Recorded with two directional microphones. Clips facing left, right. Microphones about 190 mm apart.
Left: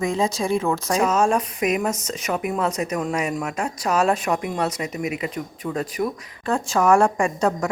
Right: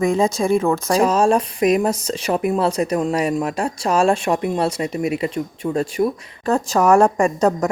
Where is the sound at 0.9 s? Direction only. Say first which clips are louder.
Right 4 dB; 35° right (ahead or behind).